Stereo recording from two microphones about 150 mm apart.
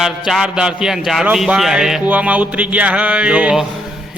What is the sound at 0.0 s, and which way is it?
A man's voice, 5° right (ahead or behind).